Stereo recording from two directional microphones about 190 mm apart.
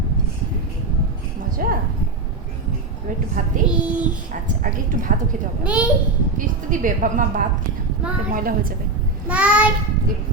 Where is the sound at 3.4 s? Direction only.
45° right (ahead or behind).